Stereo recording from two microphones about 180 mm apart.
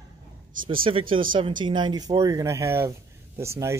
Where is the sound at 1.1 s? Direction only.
30° right (ahead or behind).